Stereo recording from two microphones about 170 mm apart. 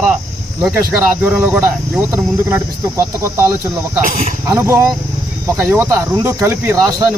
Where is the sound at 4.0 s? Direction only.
50° right (ahead or behind).